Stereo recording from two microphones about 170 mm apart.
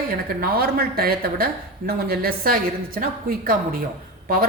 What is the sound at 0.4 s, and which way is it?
Speech, 60° right (ahead or behind).